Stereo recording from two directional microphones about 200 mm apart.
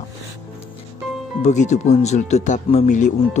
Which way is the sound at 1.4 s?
35° left (ahead or behind).